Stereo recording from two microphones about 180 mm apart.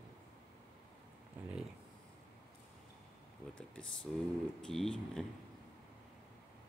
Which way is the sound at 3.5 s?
5° left (ahead or behind).